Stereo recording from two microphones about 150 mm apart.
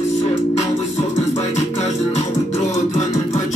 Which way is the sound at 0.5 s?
45° left (ahead or behind).